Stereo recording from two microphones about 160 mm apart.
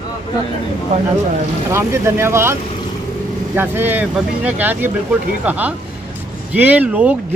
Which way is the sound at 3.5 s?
15° right (ahead or behind).